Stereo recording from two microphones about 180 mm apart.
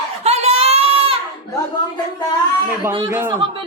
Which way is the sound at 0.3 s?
35° right (ahead or behind).